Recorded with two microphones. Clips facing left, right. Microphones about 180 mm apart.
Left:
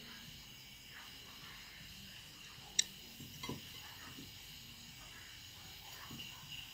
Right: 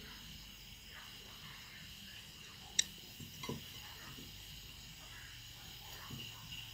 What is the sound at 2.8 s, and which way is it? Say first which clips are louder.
Tick-tock: right 1 dB; 55° right (ahead or behind).